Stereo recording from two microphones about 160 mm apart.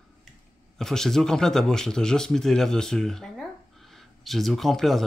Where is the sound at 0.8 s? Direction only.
5° left (ahead or behind).